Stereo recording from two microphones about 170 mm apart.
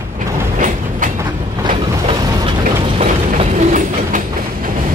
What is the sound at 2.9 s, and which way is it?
Train, 40° right (ahead or behind).